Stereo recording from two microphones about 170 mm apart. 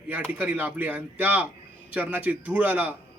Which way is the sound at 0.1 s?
10° right (ahead or behind).